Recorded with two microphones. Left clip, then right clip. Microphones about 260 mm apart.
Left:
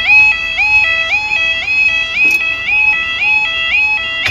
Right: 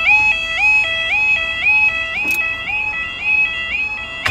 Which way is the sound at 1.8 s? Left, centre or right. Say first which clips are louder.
Left 5 dB; centre.